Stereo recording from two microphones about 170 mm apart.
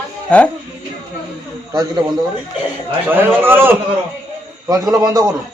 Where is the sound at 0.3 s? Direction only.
5° left (ahead or behind).